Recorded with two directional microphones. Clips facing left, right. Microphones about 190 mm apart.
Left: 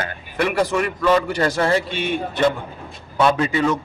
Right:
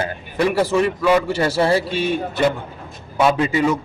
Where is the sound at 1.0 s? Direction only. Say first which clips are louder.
Right 1 dB; 10° right (ahead or behind).